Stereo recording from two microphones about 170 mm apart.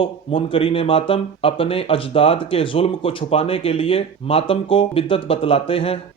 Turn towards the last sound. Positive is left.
turn(degrees=35)  # may be behind; listen again after turning